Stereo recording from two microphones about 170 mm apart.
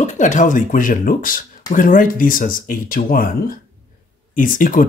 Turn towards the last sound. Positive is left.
turn(degrees=50)  # may be behind; listen again after turning